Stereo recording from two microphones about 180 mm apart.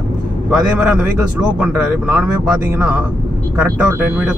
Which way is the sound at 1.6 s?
5° right (ahead or behind).